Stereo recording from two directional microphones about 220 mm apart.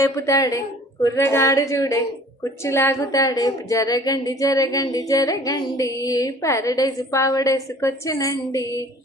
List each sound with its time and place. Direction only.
0.0 s a woman's voice: 15° left (ahead or behind)